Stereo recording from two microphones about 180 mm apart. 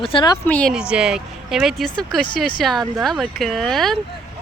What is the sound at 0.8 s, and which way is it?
Speech, 5° right (ahead or behind).